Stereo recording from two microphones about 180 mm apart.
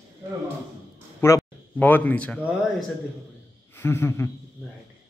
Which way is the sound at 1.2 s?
15° left (ahead or behind).